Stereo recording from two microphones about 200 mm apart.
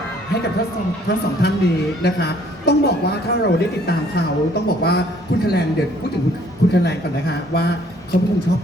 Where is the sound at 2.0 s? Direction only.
55° left (ahead or behind).